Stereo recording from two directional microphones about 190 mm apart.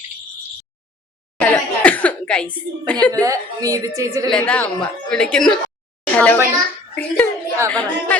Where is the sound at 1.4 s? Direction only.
10° left (ahead or behind).